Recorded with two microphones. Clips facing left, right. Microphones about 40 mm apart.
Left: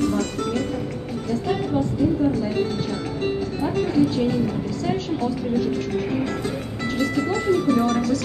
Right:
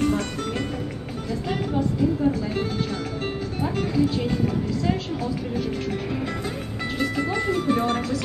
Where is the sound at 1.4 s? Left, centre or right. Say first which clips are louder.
Left 1 dB; centre.